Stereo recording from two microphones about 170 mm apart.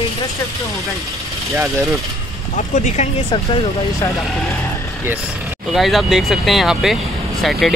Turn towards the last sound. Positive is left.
turn(degrees=0)  # may be behind; listen again after turning